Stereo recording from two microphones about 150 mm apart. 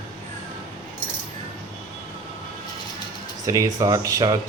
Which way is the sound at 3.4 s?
20° right (ahead or behind).